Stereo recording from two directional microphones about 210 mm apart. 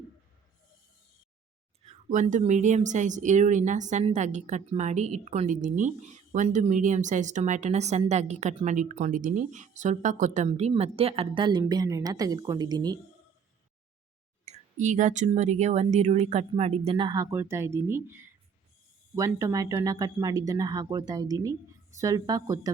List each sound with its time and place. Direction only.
1.8 s speech: 30° right (ahead or behind)
14.4 s a sound: 35° right (ahead or behind)
15.3 s speech: 35° right (ahead or behind); by 22.7 s 15° right (ahead or behind)